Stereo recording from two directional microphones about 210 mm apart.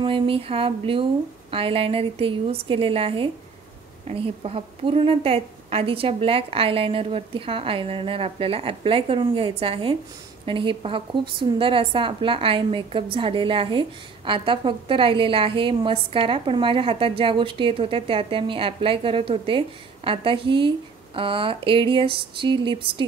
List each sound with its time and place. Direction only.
0.0 s a woman's voice: 25° right (ahead or behind)